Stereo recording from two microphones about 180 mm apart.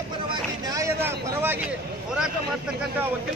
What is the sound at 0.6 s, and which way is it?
Speech, 15° right (ahead or behind).